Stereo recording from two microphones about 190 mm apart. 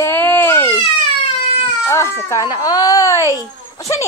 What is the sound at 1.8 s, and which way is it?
Speech, 15° left (ahead or behind).